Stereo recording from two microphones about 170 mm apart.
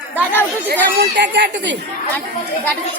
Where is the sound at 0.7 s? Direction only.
65° right (ahead or behind); by 1.8 s 90° right.